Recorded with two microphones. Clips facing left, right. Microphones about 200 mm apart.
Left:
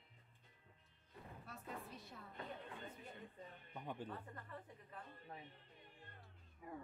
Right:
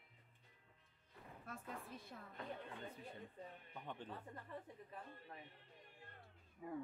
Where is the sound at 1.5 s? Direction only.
50° right (ahead or behind).